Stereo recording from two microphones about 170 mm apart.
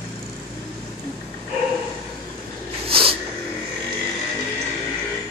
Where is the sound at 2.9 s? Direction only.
35° right (ahead or behind).